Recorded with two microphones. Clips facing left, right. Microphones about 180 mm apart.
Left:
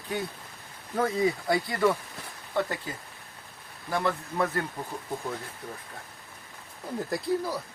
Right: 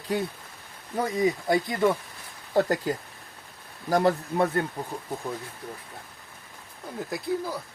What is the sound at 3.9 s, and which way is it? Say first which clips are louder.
Speech: right 6 dB; 35° right (ahead or behind).